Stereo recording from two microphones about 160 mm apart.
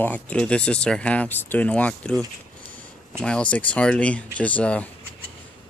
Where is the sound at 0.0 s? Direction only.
10° left (ahead or behind).